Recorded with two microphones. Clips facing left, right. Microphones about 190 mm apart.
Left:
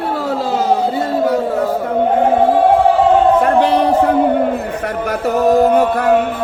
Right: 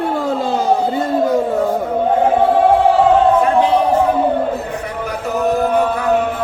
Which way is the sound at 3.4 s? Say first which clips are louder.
Left 1 dB; 70° left (ahead or behind).